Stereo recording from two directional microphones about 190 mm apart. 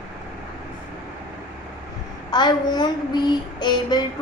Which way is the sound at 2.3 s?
20° left (ahead or behind).